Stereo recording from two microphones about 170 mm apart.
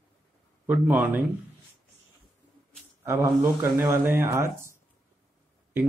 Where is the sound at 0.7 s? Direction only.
10° right (ahead or behind).